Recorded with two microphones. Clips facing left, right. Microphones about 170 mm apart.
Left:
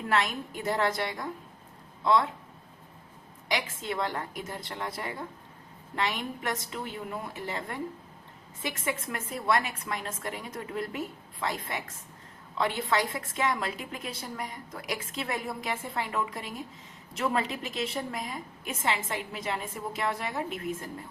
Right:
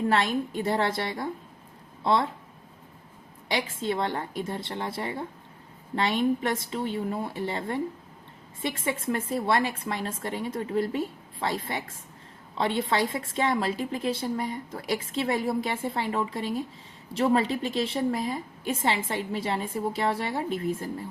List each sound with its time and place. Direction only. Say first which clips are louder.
0.1 s a woman's voice: right 4 dB; 30° right (ahead or behind)
3.5 s a woman's voice: right 4 dB; 30° right (ahead or behind)